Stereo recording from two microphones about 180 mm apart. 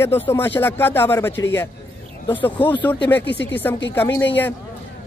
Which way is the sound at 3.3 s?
75° left (ahead or behind).